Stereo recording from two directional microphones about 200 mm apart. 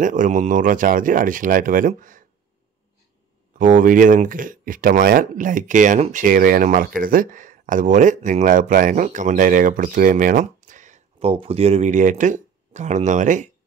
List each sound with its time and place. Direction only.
0.0 s speech: 40° right (ahead or behind)
3.5 s speech: 40° right (ahead or behind)